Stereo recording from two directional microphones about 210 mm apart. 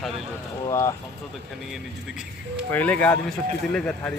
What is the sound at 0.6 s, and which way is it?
Speech, 15° left (ahead or behind).